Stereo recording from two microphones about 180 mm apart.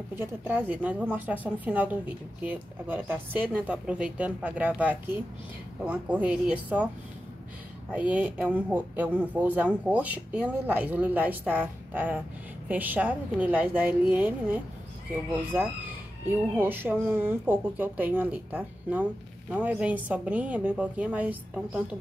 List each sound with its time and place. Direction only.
0.1 s speech: 15° right (ahead or behind)
7.9 s speech: 10° right (ahead or behind)